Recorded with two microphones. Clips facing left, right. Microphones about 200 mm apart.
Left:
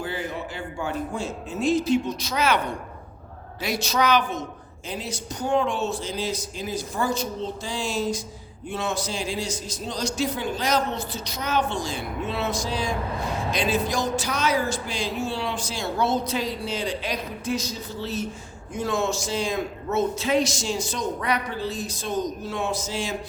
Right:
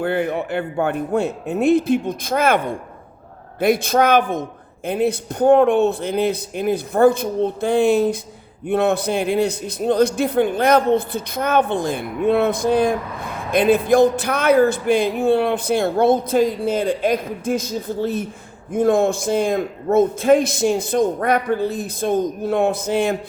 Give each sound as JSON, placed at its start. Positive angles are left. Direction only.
{"t": 0.0, "sound": "a man's voice", "side_deg": -60}